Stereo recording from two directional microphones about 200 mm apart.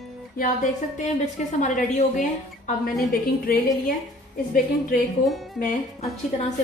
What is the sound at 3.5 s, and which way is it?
Speech, 45° left (ahead or behind).